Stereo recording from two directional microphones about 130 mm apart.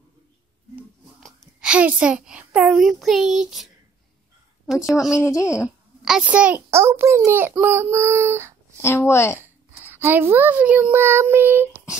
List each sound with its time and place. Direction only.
1.2 s a child's voice: centre (ahead or behind)
5.1 s speech: 25° left (ahead or behind)
6.0 s a child's voice: 5° right (ahead or behind)
8.8 s speech: 20° left (ahead or behind)
9.4 s a child's voice: 15° right (ahead or behind)